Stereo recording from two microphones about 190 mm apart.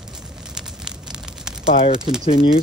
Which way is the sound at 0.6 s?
5° right (ahead or behind).